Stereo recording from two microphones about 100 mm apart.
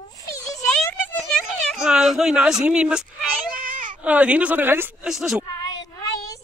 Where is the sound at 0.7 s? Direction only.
10° left (ahead or behind).